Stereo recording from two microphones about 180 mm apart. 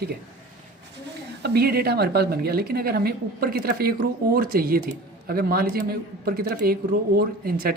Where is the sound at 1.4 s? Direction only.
60° right (ahead or behind).